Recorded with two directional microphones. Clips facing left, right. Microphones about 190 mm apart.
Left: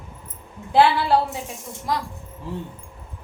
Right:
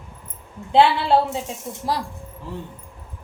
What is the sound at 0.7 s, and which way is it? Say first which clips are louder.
A woman's voice: right 1 dB; 25° right (ahead or behind).